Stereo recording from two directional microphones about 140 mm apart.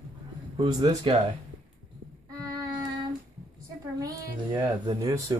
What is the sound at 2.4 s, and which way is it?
Music, 25° right (ahead or behind).